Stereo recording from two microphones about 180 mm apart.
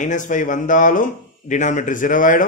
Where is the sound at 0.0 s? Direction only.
45° left (ahead or behind).